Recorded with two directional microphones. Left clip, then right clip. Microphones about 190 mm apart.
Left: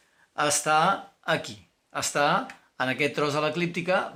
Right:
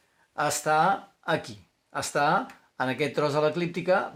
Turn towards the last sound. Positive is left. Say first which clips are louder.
# right 1 dB
turn(degrees=-60)  # may be behind; listen again after turning